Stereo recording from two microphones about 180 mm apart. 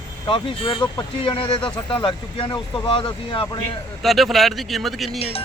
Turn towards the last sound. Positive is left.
turn(degrees=0)  # may be behind; listen again after turning